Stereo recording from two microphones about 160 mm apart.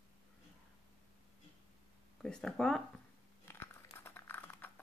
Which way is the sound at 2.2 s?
5° left (ahead or behind).